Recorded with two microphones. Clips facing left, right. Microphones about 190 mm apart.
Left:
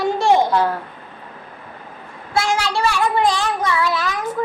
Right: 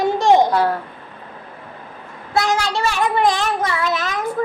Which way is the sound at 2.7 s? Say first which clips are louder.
Left 1 dB; 20° right (ahead or behind).